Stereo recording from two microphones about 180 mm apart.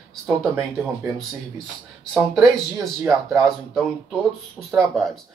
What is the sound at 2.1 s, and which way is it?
Speech, centre (ahead or behind).